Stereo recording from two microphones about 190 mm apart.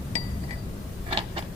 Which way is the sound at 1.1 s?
30° right (ahead or behind).